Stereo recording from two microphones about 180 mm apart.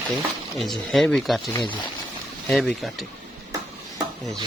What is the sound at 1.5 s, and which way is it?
Speech, 25° left (ahead or behind).